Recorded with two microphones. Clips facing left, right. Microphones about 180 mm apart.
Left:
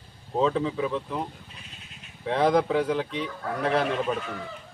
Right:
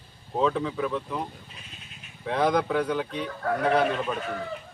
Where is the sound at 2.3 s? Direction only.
Centre (ahead or behind).